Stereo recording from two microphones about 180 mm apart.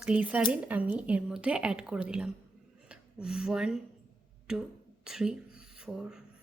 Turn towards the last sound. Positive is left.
turn(degrees=-5)  # may be behind; listen again after turning